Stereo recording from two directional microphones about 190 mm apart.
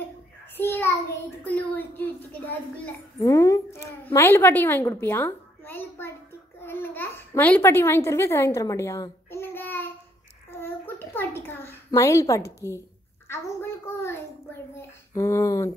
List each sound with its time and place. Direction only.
0.6 s child singing: 10° left (ahead or behind)
1.5 s a child's voice: 10° left (ahead or behind)
10.6 s a sound: 10° left (ahead or behind)
13.3 s a child's voice: 10° left (ahead or behind)